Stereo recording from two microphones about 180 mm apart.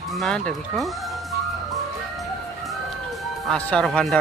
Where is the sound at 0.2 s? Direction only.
5° left (ahead or behind).